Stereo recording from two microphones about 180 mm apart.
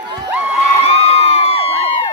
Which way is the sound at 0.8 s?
35° left (ahead or behind).